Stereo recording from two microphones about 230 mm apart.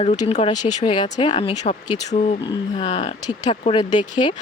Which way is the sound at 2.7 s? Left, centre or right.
Left.